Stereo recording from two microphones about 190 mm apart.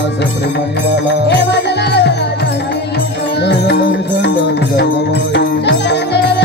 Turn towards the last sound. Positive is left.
turn(degrees=60)  # may be behind; listen again after turning